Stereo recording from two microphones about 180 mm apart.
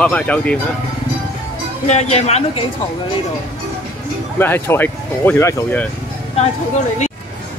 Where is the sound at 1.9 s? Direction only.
40° left (ahead or behind).